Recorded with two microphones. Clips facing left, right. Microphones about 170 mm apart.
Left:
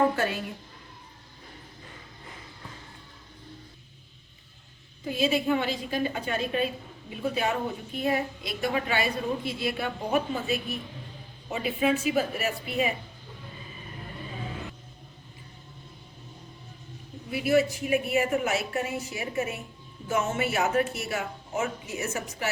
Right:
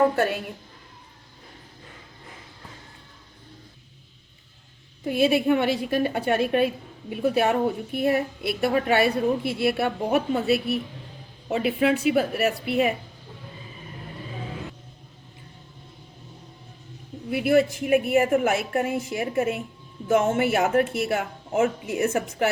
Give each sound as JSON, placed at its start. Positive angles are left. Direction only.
{"t": 5.0, "sound": "a woman's voice", "side_deg": -65}
{"t": 17.3, "sound": "a woman's voice", "side_deg": -55}